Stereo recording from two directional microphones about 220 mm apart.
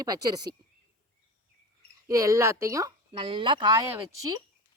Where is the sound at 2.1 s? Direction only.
15° right (ahead or behind).